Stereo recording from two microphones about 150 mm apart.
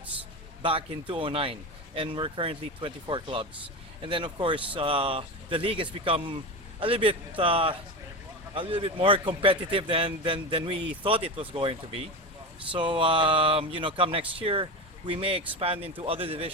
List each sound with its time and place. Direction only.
0.6 s a man's voice: 35° right (ahead or behind)